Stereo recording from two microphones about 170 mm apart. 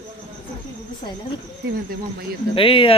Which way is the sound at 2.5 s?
30° left (ahead or behind).